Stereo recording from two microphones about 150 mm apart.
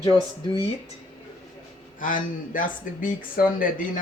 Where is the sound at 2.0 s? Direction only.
65° left (ahead or behind).